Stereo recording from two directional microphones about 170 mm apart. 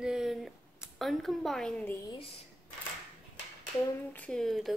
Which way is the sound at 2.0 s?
35° left (ahead or behind).